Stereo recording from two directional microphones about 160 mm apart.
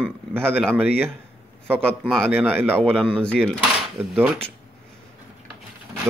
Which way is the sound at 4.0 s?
10° right (ahead or behind).